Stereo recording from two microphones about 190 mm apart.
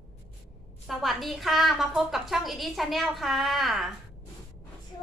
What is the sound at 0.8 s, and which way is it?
A woman's voice, centre (ahead or behind).